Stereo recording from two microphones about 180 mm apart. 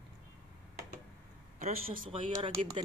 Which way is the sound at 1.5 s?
40° right (ahead or behind).